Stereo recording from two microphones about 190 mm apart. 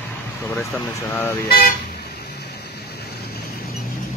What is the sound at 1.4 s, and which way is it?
Speech, 50° left (ahead or behind).